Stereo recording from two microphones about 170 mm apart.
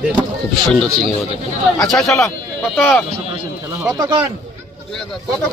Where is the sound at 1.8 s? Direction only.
Centre (ahead or behind).